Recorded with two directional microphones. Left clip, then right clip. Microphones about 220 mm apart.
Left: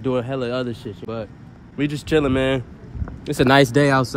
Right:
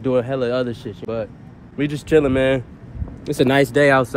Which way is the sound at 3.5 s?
40° left (ahead or behind).